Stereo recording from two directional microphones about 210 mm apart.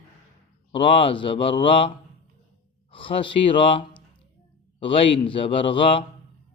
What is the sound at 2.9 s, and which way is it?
A man's voice, 25° left (ahead or behind).